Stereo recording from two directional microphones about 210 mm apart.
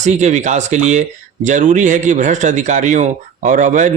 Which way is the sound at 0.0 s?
35° right (ahead or behind).